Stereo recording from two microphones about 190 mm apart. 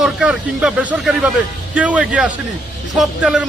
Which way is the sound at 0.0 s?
5° right (ahead or behind).